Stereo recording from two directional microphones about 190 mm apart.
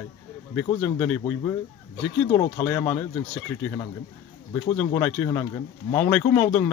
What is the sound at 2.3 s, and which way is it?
A man's voice, 20° left (ahead or behind).